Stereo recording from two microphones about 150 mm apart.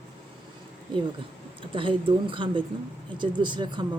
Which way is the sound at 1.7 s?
35° right (ahead or behind).